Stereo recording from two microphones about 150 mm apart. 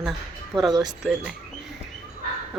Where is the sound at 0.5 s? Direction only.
25° right (ahead or behind).